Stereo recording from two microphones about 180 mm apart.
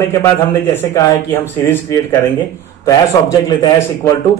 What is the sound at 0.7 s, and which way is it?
A man's voice, 15° left (ahead or behind).